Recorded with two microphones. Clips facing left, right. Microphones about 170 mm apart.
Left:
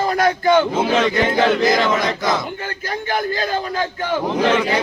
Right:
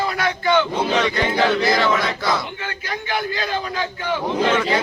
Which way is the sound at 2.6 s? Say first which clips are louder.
Left 3 dB; 40° left (ahead or behind).